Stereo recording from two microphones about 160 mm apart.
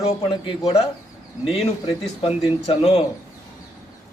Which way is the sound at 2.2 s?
40° left (ahead or behind).